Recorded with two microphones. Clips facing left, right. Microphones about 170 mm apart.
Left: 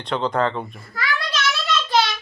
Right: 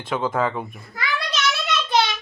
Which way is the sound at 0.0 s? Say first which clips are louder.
Left 1 dB; 5° right (ahead or behind).